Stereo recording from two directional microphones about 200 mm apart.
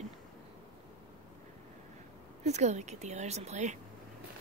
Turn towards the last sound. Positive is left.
turn(degrees=-35)  # may be behind; listen again after turning